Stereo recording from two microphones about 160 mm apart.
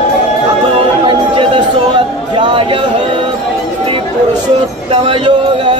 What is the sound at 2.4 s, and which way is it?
Speech, 30° right (ahead or behind).